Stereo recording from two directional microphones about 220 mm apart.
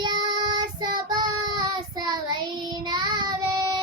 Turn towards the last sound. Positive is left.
turn(degrees=-20)  # may be behind; listen again after turning